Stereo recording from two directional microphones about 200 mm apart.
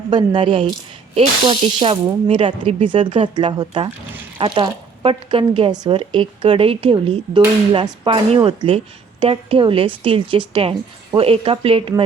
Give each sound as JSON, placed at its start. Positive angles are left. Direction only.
{"t": 0.1, "sound": "speech", "side_deg": -25}